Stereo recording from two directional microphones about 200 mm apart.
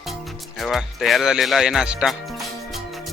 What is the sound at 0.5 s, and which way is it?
Speech, centre (ahead or behind).